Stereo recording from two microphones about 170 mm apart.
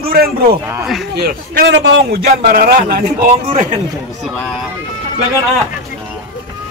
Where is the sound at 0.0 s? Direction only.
60° right (ahead or behind).